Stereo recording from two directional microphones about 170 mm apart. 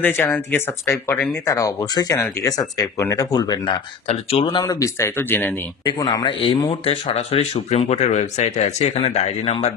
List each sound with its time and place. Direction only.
0.0 s speech: 10° left (ahead or behind)
5.9 s speech: 25° left (ahead or behind)